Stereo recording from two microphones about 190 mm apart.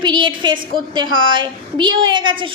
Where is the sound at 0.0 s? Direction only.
25° right (ahead or behind).